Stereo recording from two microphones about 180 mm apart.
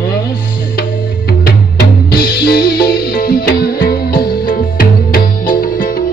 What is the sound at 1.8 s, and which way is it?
Music, 60° left (ahead or behind).